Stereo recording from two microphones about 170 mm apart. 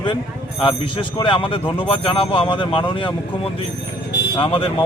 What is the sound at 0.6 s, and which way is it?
Speech, 30° left (ahead or behind).